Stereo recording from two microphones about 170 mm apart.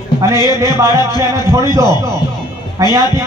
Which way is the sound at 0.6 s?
15° right (ahead or behind).